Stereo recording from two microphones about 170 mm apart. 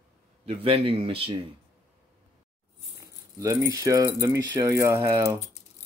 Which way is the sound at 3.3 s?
20° right (ahead or behind).